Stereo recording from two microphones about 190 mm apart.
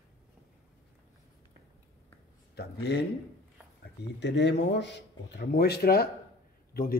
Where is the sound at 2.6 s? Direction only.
60° left (ahead or behind).